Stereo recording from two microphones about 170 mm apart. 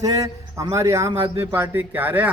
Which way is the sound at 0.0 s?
20° right (ahead or behind).